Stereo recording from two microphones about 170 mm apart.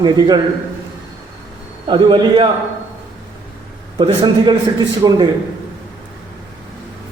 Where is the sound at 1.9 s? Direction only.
30° right (ahead or behind).